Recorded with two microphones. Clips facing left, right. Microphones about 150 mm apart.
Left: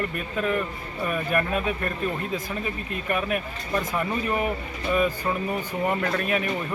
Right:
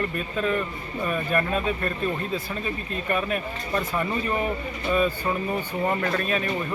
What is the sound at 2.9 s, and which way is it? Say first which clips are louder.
Speech: even; 10° left (ahead or behind).